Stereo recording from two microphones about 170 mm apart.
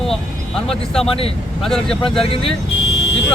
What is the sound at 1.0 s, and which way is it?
Speech, 35° left (ahead or behind).